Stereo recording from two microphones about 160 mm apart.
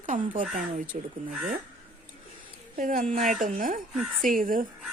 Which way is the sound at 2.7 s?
60° right (ahead or behind).